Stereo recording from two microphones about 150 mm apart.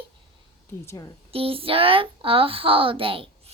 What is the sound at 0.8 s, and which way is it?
Speech, 25° left (ahead or behind).